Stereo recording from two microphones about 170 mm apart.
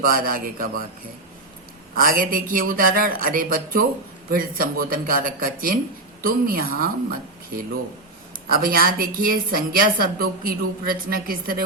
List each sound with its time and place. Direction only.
0.0 s a woman's voice: 60° right (ahead or behind)
2.0 s a woman's voice: 55° right (ahead or behind)